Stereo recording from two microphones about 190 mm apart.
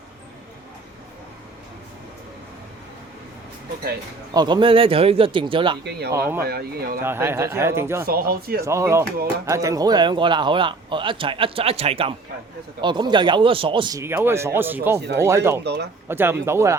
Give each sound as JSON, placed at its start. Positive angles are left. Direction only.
{"t": 4.4, "sound": "speech", "side_deg": -25}
{"t": 5.8, "sound": "speech", "side_deg": -60}
{"t": 7.0, "sound": "speech", "side_deg": -10}
{"t": 8.0, "sound": "speech", "side_deg": -55}
{"t": 8.6, "sound": "speech", "side_deg": -15}
{"t": 15.6, "sound": "speech", "side_deg": -60}
{"t": 16.0, "sound": "speech", "side_deg": -10}